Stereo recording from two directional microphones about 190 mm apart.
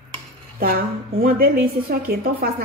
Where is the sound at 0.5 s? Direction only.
50° right (ahead or behind).